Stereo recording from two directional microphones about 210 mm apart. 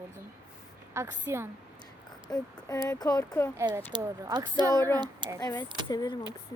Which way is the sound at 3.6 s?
15° right (ahead or behind).